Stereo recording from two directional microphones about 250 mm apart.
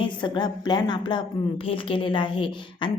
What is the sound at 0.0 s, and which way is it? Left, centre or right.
A woman's voice, centre.